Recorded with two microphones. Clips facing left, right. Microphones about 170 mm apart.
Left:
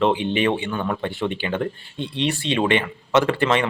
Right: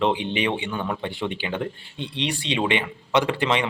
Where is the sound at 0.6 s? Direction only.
15° right (ahead or behind).